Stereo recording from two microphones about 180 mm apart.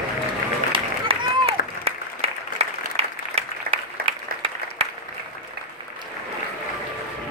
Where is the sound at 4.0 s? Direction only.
35° right (ahead or behind).